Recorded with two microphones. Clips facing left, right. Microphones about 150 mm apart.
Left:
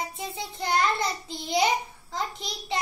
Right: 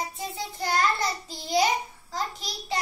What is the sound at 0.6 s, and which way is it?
Child singing, 20° left (ahead or behind).